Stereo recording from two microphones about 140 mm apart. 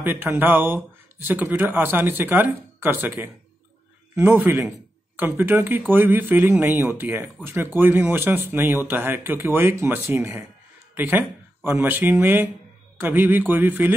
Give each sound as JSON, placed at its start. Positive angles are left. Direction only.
{"t": 0.0, "sound": "speech", "side_deg": -15}